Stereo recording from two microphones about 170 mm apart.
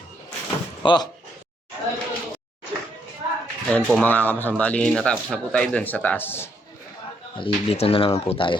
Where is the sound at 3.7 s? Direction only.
10° left (ahead or behind).